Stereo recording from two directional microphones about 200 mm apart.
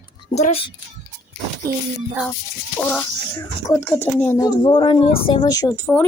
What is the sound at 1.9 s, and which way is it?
Speech, centre (ahead or behind).